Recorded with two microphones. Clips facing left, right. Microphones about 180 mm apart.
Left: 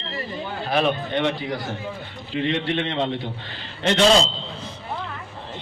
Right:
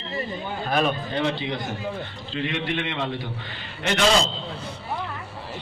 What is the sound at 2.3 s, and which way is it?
Speech, 30° left (ahead or behind).